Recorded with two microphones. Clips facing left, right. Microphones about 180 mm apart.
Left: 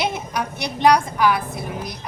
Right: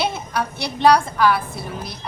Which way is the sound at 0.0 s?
15° left (ahead or behind).